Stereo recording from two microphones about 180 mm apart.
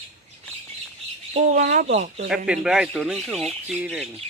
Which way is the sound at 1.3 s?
45° right (ahead or behind).